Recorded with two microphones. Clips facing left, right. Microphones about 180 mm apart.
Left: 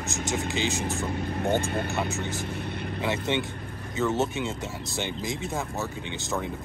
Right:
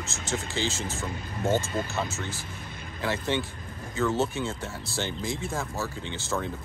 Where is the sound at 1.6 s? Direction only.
60° left (ahead or behind).